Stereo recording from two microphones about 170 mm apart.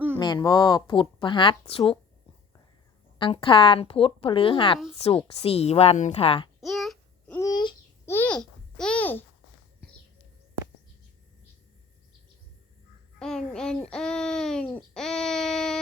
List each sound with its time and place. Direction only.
0.2 s speech: 25° left (ahead or behind)
3.2 s a woman's voice: 30° left (ahead or behind)
6.6 s babbling: centre (ahead or behind)
7.3 s babbling: 25° left (ahead or behind)
8.0 s babbling: 10° left (ahead or behind)
13.1 s child singing: 5° left (ahead or behind)
13.8 s baby cry: 5° left (ahead or behind)
14.9 s a sound: 5° left (ahead or behind)